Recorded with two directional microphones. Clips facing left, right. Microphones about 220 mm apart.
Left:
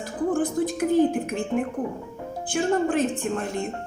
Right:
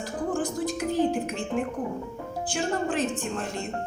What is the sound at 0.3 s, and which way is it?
A woman's voice, 55° left (ahead or behind).